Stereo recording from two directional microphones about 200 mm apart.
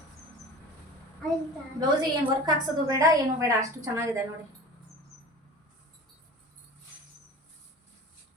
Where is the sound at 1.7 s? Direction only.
20° right (ahead or behind).